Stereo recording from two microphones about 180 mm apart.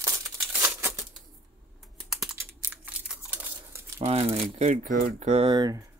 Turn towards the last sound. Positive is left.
turn(degrees=-20)  # may be behind; listen again after turning